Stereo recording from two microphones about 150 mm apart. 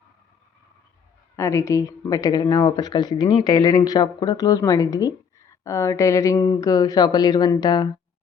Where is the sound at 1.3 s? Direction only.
20° left (ahead or behind).